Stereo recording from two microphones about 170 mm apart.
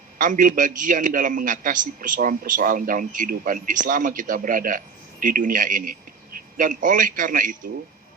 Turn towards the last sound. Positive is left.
turn(degrees=-50)  # may be behind; listen again after turning